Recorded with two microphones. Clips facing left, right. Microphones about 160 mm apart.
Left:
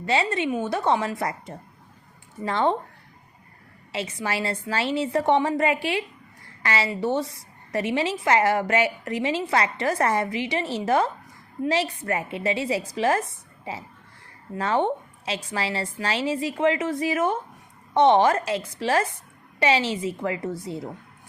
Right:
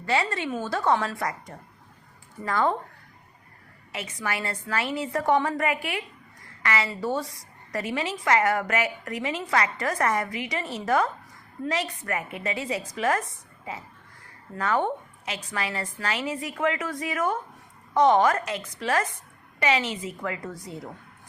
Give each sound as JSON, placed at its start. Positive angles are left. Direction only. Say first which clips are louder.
{"t": 0.0, "sound": "a woman's voice", "louder": "left 3 dB", "side_deg": 25}
{"t": 3.9, "sound": "a woman's voice", "louder": "left 4 dB", "side_deg": 25}